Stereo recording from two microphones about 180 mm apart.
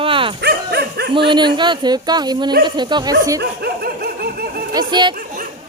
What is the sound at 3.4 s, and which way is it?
Dog, 60° right (ahead or behind).